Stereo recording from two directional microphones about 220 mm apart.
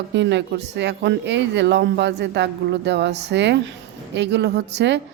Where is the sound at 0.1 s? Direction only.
55° right (ahead or behind).